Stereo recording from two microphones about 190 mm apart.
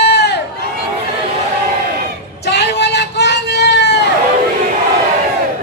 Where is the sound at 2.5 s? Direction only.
65° left (ahead or behind).